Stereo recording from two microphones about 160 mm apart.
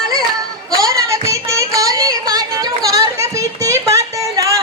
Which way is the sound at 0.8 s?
20° right (ahead or behind).